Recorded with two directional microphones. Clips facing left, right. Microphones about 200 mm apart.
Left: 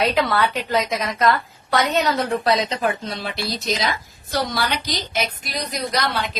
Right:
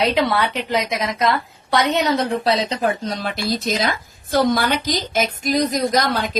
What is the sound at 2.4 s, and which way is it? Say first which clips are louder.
A woman's voice: right 1 dB; 35° right (ahead or behind).